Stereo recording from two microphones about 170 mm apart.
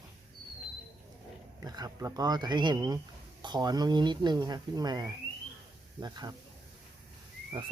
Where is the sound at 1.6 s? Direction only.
20° right (ahead or behind).